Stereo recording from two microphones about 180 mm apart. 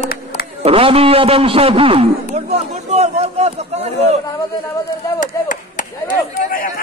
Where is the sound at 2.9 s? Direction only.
35° right (ahead or behind).